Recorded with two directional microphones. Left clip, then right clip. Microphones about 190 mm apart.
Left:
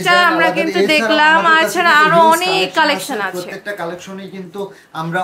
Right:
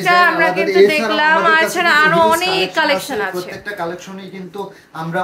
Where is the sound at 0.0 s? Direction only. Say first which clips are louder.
Even; 10° left (ahead or behind).